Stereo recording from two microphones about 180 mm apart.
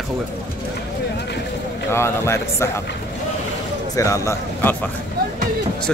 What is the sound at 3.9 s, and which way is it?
Speech, 15° left (ahead or behind).